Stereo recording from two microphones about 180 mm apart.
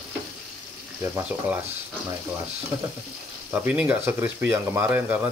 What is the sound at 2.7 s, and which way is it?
Speech, 15° right (ahead or behind).